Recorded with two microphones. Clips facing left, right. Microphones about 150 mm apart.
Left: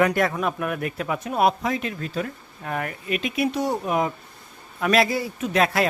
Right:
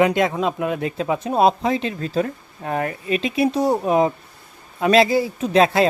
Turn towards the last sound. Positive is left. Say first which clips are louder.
# right 5 dB
turn(degrees=-30)  # may be behind; listen again after turning